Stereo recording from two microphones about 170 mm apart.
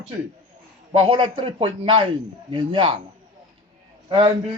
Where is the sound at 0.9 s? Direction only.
30° right (ahead or behind).